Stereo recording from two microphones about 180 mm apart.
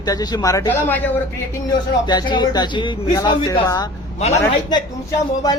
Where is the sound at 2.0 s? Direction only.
25° left (ahead or behind).